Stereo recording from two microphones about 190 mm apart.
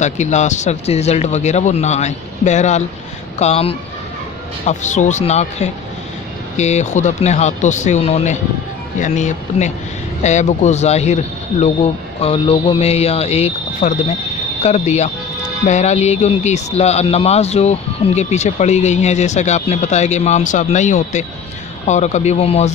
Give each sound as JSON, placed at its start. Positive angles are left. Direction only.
{"t": 0.0, "sound": "speech", "side_deg": 40}
{"t": 12.2, "sound": "speech", "side_deg": 30}